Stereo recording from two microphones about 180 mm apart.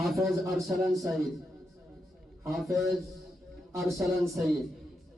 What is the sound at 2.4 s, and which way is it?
Speech, centre (ahead or behind).